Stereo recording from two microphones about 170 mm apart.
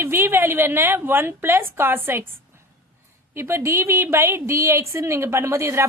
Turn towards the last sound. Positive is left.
turn(degrees=-15)  # may be behind; listen again after turning